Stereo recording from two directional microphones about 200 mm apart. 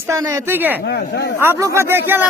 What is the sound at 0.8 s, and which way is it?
Speech, 55° left (ahead or behind).